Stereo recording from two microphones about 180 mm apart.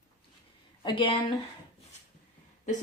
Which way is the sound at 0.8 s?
30° left (ahead or behind).